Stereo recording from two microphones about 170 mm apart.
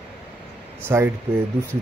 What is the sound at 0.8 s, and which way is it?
Speech, 15° right (ahead or behind).